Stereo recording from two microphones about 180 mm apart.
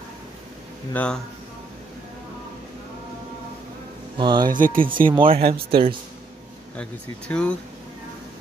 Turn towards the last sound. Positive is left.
turn(degrees=5)  # may be behind; listen again after turning